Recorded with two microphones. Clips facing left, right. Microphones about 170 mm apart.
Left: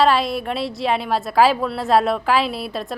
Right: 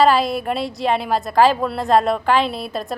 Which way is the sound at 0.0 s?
Centre (ahead or behind).